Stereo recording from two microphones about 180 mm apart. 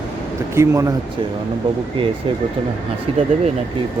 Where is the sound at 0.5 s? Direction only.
15° right (ahead or behind).